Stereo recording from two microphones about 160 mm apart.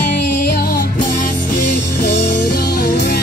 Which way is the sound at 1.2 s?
55° left (ahead or behind).